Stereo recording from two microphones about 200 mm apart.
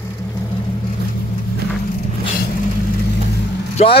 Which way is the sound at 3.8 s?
35° left (ahead or behind).